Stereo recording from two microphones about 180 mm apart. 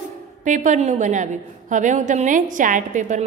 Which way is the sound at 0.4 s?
45° right (ahead or behind).